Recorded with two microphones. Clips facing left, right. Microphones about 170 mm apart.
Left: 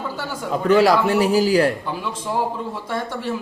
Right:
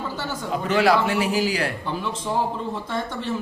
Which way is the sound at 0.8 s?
40° left (ahead or behind).